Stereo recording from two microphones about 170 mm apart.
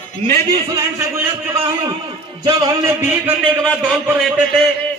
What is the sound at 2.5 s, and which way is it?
Speech, 25° right (ahead or behind).